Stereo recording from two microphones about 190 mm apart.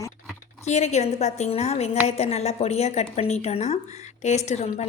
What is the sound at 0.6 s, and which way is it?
A woman's voice, 35° left (ahead or behind).